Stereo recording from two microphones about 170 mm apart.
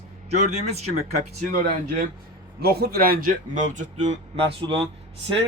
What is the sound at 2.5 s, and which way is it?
A man's voice, 65° right (ahead or behind).